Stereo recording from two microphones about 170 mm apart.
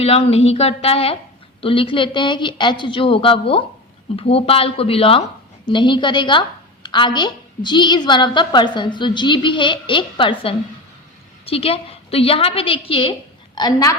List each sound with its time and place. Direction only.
0.0 s a woman's voice: 35° left (ahead or behind)
13.6 s a woman's voice: 20° left (ahead or behind)